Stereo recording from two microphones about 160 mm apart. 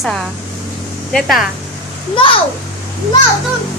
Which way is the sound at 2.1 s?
35° left (ahead or behind).